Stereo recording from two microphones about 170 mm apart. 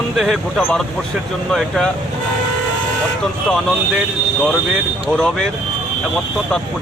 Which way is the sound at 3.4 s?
Centre (ahead or behind).